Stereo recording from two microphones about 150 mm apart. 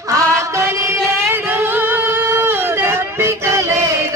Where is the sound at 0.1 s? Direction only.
20° right (ahead or behind).